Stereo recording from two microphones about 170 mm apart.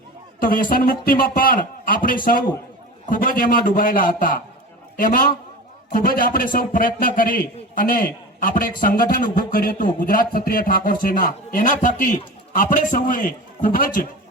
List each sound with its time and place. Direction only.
0.3 s a man's voice: 55° left (ahead or behind)